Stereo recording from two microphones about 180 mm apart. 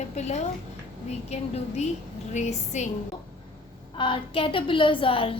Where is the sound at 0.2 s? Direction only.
40° left (ahead or behind).